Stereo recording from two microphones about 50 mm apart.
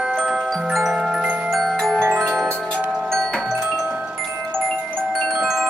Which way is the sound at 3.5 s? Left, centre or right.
Centre.